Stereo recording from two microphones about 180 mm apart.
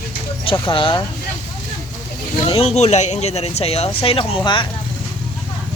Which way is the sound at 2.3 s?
30° left (ahead or behind).